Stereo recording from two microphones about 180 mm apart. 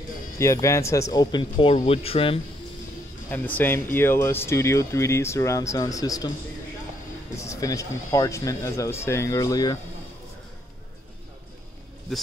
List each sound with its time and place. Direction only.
0.4 s speech: 15° left (ahead or behind); by 2.4 s 30° left (ahead or behind)
3.3 s speech: 10° left (ahead or behind)
7.3 s speech: 15° left (ahead or behind)